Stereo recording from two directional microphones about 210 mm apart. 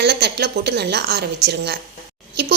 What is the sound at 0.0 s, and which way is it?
A woman's voice, 50° right (ahead or behind).